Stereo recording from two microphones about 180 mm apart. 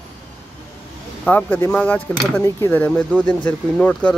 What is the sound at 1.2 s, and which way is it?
Speech, 10° left (ahead or behind).